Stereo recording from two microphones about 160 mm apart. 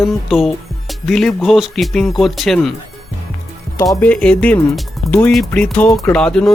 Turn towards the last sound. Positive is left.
turn(degrees=5)  # may be behind; listen again after turning